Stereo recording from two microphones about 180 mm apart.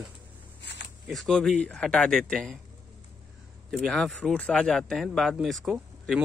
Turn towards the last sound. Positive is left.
turn(degrees=0)  # may be behind; listen again after turning